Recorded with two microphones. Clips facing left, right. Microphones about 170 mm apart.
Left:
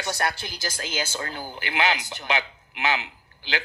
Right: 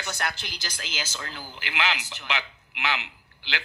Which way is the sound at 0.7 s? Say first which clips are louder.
Left 8 dB; 55° left (ahead or behind).